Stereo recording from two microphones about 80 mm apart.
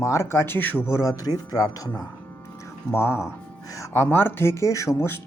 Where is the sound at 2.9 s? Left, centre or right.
Left.